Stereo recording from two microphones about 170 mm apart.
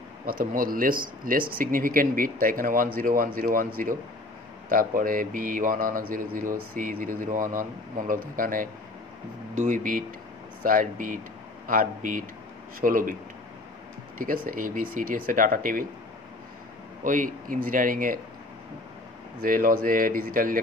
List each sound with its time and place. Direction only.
0.3 s speech: 55° right (ahead or behind)
14.1 s speech: 55° right (ahead or behind)
17.0 s speech: 50° right (ahead or behind)
19.4 s speech: 55° right (ahead or behind)